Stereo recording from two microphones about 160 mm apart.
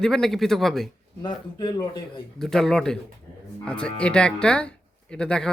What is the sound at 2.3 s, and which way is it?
Speech, centre (ahead or behind).